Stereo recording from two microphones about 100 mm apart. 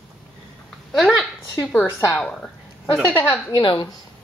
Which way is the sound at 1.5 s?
20° left (ahead or behind).